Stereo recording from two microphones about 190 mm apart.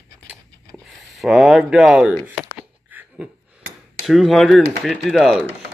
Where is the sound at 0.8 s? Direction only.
Centre (ahead or behind).